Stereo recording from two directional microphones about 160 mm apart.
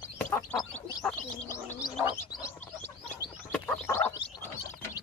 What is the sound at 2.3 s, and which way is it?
Bird, 20° left (ahead or behind).